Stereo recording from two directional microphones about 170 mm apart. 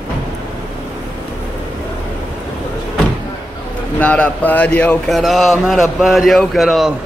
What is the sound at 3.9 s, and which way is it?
Speech, 10° left (ahead or behind).